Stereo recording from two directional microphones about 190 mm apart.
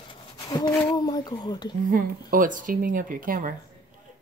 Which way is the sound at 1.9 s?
45° right (ahead or behind).